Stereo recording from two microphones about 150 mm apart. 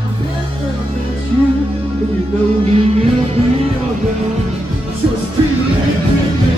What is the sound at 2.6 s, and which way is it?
Music, 45° right (ahead or behind).